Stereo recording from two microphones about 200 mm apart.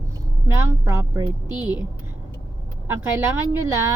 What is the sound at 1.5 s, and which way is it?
Speech, 20° left (ahead or behind).